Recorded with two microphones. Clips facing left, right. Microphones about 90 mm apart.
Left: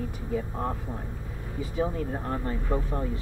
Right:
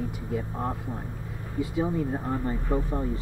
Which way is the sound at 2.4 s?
15° right (ahead or behind).